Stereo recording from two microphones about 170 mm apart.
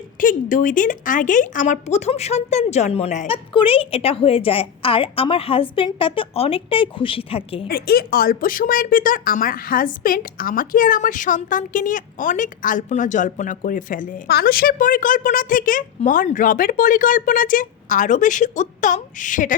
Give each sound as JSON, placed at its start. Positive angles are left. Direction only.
{"t": 0.2, "sound": "speech", "side_deg": 55}
{"t": 7.7, "sound": "speech", "side_deg": 65}